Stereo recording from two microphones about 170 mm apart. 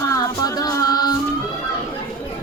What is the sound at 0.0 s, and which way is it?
Music, 20° left (ahead or behind).